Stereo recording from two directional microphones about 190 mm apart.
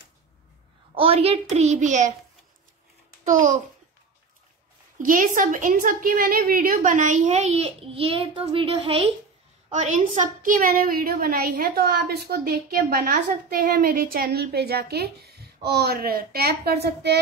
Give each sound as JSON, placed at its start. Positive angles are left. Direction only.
{"t": 0.9, "sound": "a child's voice", "side_deg": -30}
{"t": 3.3, "sound": "a woman's voice", "side_deg": -40}
{"t": 4.9, "sound": "a woman's voice", "side_deg": -45}
{"t": 9.7, "sound": "a woman's voice", "side_deg": -40}